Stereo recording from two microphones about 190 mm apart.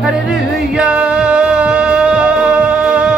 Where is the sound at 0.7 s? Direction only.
5° right (ahead or behind).